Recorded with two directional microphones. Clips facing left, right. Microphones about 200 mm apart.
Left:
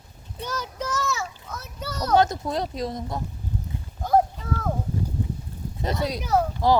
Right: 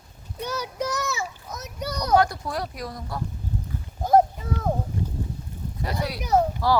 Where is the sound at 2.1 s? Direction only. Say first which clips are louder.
Left 1 dB; 20° left (ahead or behind).